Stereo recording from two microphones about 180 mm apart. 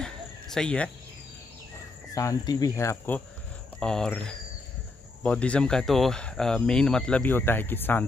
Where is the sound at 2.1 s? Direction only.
20° left (ahead or behind); by 4.2 s 5° left (ahead or behind).